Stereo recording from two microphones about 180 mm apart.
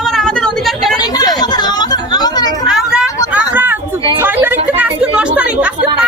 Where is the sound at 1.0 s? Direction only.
20° left (ahead or behind).